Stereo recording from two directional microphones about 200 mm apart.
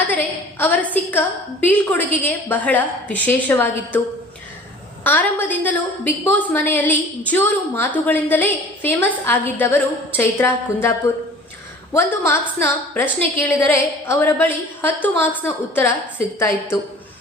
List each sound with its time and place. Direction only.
0.1 s a sound: 10° left (ahead or behind)
1.6 s a woman's voice: 10° left (ahead or behind)
5.0 s a woman's voice: 10° left (ahead or behind)